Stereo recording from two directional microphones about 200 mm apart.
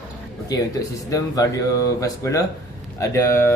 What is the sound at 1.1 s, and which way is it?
Speech, 15° left (ahead or behind).